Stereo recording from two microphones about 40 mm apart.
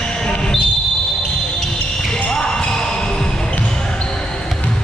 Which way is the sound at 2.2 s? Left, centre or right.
Centre.